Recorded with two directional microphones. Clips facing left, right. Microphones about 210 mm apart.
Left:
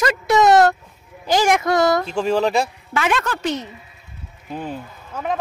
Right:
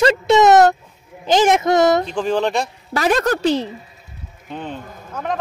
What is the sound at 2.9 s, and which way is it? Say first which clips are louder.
Speech: right 4 dB; 40° right (ahead or behind).